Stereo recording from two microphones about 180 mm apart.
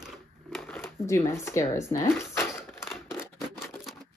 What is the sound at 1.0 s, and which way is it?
Speech, 15° left (ahead or behind).